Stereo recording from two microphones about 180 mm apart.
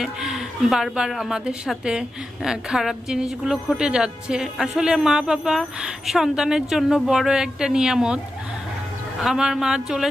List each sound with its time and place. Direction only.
0.0 s a woman's voice: centre (ahead or behind)
9.2 s a woman's voice: 5° right (ahead or behind)